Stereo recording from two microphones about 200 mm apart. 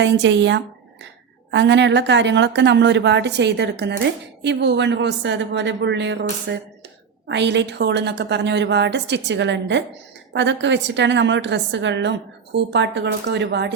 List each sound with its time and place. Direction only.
0.0 s a woman's voice: 65° right (ahead or behind)